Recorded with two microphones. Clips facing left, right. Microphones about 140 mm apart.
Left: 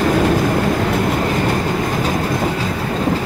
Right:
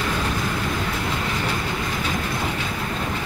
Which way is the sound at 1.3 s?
45° left (ahead or behind).